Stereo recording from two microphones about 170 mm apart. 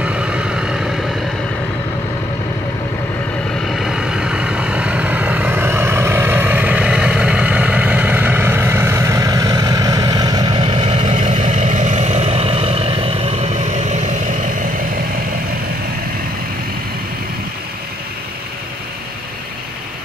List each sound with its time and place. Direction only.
0.0 s vehicle: 5° right (ahead or behind)
3.6 s vehicle: centre (ahead or behind); by 11.1 s 30° right (ahead or behind)
11.1 s vehicle: 50° right (ahead or behind)